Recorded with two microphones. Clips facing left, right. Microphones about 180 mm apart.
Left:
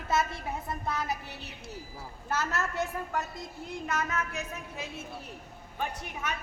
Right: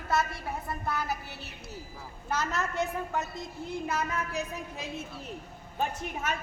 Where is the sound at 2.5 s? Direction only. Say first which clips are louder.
Right 1 dB; 20° right (ahead or behind).